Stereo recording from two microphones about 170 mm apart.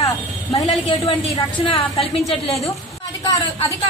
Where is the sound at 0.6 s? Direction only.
30° left (ahead or behind).